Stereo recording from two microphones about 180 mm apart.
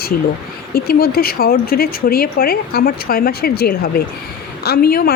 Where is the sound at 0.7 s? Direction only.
55° left (ahead or behind).